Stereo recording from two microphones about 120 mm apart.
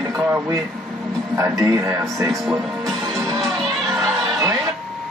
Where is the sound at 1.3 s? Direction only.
25° right (ahead or behind).